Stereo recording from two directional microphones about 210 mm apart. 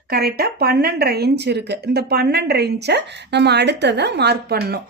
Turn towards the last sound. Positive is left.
turn(degrees=-50)  # may be behind; listen again after turning